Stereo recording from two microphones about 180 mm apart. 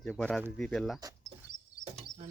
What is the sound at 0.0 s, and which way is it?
Speech, 5° left (ahead or behind).